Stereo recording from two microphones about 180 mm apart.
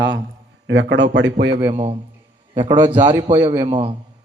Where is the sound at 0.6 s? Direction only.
85° right.